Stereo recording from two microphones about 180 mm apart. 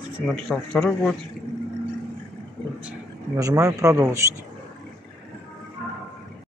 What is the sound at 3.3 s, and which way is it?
Speech, 15° right (ahead or behind).